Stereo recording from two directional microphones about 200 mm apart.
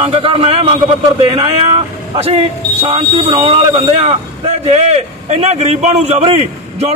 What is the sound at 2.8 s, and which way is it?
A man's voice, 25° right (ahead or behind).